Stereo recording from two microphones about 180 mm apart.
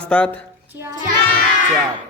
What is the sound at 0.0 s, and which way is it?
Speech, 5° left (ahead or behind).